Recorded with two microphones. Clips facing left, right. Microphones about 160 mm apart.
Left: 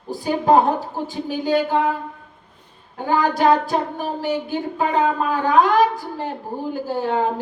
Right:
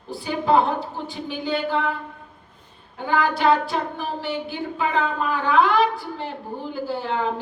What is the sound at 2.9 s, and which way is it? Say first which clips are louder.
Speech: left 3 dB; 45° left (ahead or behind).